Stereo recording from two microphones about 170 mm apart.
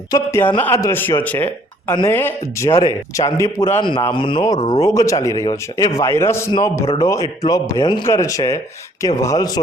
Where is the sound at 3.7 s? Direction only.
30° left (ahead or behind).